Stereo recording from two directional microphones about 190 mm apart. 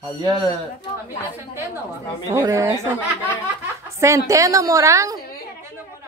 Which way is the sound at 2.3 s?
15° right (ahead or behind).